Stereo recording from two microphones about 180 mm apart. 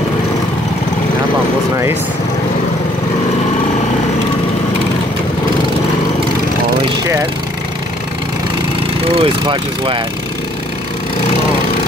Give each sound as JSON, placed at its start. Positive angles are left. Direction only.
{"t": 9.1, "sound": "speech", "side_deg": -30}